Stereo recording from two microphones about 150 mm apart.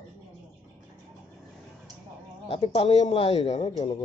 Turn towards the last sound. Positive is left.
turn(degrees=45)  # may be behind; listen again after turning